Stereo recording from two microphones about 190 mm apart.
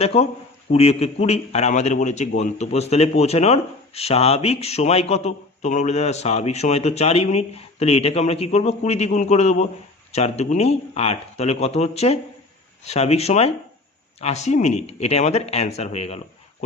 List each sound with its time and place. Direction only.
0.0 s a man's voice: 35° left (ahead or behind)